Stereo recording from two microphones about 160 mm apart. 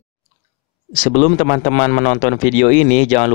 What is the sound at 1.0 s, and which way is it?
Speech, 50° left (ahead or behind).